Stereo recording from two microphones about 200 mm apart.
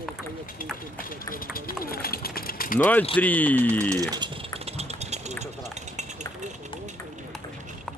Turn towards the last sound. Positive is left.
turn(degrees=-35)  # may be behind; listen again after turning